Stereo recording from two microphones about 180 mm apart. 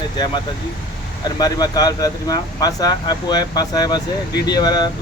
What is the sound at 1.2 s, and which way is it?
Speech, 20° left (ahead or behind).